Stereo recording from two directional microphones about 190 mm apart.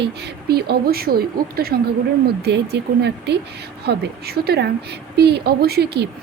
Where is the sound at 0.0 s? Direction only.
60° right (ahead or behind).